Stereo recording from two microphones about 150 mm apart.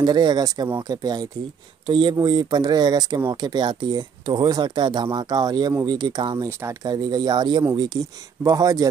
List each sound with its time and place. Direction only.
0.0 s speech: 30° right (ahead or behind)